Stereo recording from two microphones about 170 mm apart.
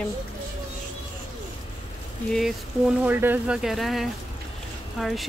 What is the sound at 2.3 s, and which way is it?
Speech, centre (ahead or behind).